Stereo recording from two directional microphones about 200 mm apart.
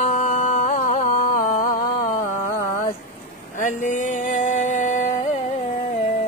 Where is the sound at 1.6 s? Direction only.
40° left (ahead or behind).